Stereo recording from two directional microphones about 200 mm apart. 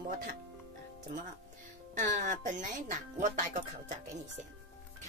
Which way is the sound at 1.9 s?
40° right (ahead or behind).